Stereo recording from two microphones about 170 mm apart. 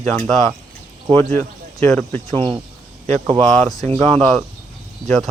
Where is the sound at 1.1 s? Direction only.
15° left (ahead or behind).